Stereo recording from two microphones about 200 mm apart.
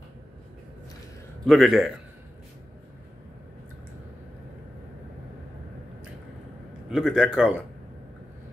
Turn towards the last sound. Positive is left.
turn(degrees=0)  # may be behind; listen again after turning